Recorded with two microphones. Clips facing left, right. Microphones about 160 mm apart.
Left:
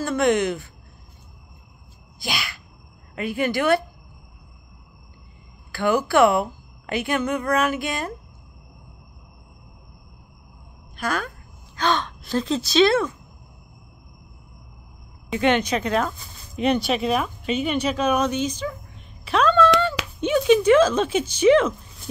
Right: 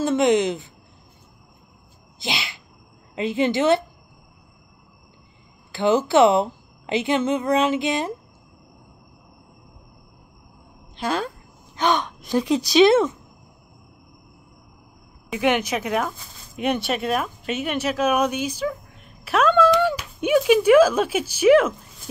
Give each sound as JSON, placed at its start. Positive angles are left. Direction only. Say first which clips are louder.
{"t": 0.0, "sound": "a woman's voice", "louder": "right 2 dB", "side_deg": -20}
{"t": 2.1, "sound": "a sound", "louder": "right 1 dB", "side_deg": -20}
{"t": 3.2, "sound": "a woman's voice", "louder": "right 3 dB", "side_deg": -20}
{"t": 5.7, "sound": "a woman's voice", "louder": "right 2 dB", "side_deg": -20}
{"t": 11.0, "sound": "speech", "louder": "right 2 dB", "side_deg": -25}
{"t": 15.3, "sound": "speech", "louder": "left 1 dB", "side_deg": -10}
{"t": 19.2, "sound": "a sound", "louder": "right 1 dB", "side_deg": -5}
{"t": 20.2, "sound": "speech", "louder": "even", "side_deg": -10}